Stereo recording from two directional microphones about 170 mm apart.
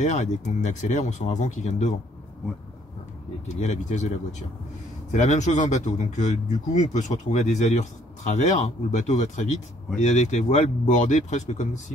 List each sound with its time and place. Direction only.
0.0 s speech: 45° left (ahead or behind)
3.4 s speech: 45° left (ahead or behind)